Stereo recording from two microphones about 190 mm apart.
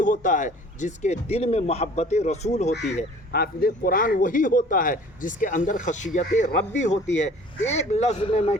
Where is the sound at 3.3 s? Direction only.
55° left (ahead or behind).